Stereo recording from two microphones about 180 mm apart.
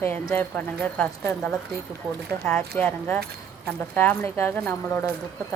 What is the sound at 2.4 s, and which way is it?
Speech, 5° left (ahead or behind).